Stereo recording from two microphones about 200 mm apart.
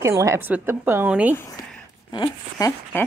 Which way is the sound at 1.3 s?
15° left (ahead or behind).